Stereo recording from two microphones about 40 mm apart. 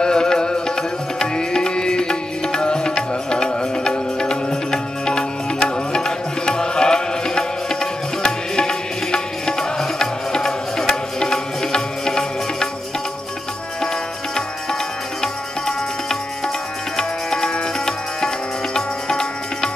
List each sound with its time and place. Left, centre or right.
0.0 s music: centre
16.9 s tabla: centre